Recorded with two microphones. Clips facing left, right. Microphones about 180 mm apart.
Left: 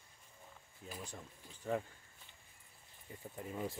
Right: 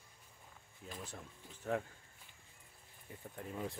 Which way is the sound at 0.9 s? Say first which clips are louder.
Even; centre (ahead or behind).